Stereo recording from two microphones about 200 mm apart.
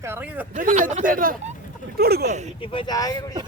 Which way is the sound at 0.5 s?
40° right (ahead or behind).